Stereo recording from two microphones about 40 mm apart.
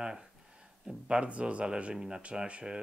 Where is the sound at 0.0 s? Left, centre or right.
Centre.